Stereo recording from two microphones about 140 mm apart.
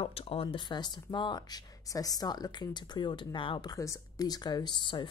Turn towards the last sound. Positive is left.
turn(degrees=35)  # may be behind; listen again after turning